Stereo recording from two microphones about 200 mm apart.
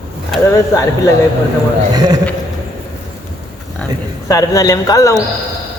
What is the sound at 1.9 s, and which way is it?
Speech, 20° right (ahead or behind).